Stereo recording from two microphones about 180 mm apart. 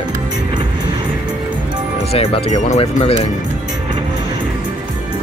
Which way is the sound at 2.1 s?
35° left (ahead or behind).